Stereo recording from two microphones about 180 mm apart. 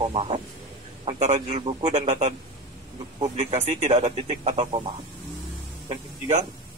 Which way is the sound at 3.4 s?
40° right (ahead or behind).